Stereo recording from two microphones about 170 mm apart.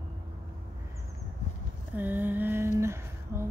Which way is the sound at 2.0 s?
10° right (ahead or behind).